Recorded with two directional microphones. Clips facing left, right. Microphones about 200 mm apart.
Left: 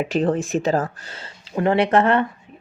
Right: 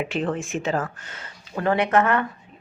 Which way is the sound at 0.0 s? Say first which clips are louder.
Left 5 dB; 40° left (ahead or behind).